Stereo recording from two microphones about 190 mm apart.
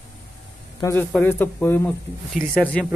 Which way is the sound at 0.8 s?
15° left (ahead or behind).